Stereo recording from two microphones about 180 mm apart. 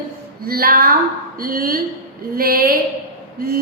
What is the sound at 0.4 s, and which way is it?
A woman's voice, 55° right (ahead or behind).